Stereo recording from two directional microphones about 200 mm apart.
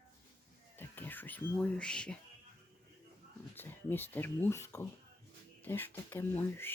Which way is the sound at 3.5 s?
10° left (ahead or behind).